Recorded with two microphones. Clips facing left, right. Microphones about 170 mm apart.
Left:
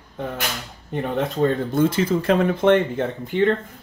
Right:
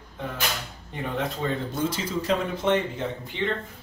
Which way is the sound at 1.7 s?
55° left (ahead or behind).